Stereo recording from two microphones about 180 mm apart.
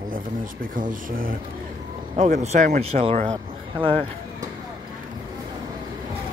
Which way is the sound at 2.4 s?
40° right (ahead or behind).